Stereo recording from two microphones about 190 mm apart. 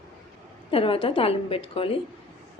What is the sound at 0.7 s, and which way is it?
A woman's voice, 30° left (ahead or behind).